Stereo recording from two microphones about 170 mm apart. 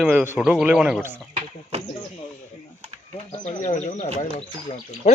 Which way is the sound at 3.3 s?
40° left (ahead or behind).